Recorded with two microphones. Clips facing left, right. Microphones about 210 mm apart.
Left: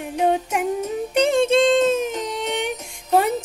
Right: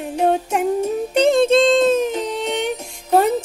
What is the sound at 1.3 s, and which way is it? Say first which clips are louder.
Music: right 3 dB; 10° left (ahead or behind).